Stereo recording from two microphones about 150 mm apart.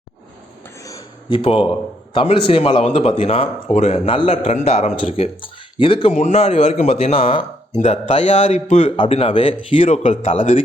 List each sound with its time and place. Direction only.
0.8 s a sound: 20° left (ahead or behind)
1.3 s speech: 35° left (ahead or behind)
6.1 s speech: 50° left (ahead or behind)